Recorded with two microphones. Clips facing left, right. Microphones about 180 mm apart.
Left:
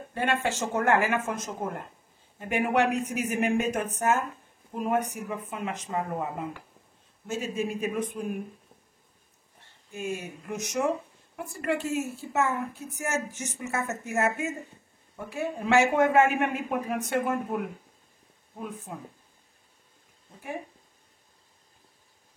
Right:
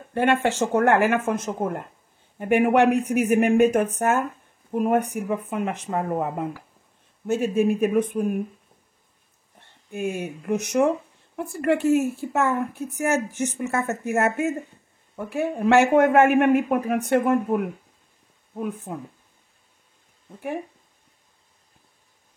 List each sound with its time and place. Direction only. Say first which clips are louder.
0.1 s a woman's voice: right 7 dB; 60° right (ahead or behind)
9.8 s a woman's voice: right 6 dB; 60° right (ahead or behind)
18.9 s speech: right 7 dB; 55° right (ahead or behind)